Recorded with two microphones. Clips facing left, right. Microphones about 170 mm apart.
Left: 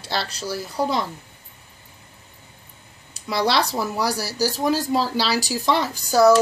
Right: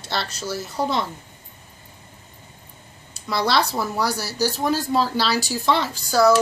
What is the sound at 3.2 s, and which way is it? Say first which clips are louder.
Speech: even; 10° left (ahead or behind).